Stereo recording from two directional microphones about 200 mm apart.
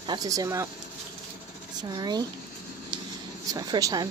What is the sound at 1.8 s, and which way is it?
Speech, 20° right (ahead or behind).